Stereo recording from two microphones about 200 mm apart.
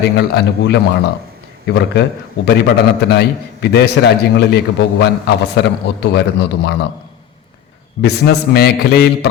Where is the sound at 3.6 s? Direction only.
55° left (ahead or behind).